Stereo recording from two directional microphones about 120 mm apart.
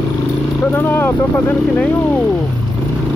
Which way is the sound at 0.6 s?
15° left (ahead or behind).